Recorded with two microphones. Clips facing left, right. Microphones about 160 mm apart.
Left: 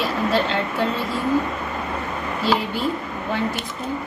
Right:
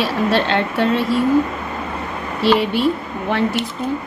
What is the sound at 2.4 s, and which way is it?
Speech, 75° right (ahead or behind).